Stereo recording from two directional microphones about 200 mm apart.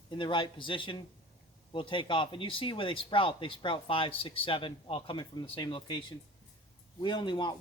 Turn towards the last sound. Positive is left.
turn(degrees=25)  # may be behind; listen again after turning